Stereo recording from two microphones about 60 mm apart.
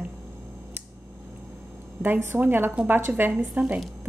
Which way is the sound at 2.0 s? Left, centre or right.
Right.